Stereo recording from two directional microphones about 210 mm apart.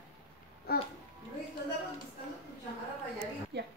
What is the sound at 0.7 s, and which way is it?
Speech, 45° left (ahead or behind).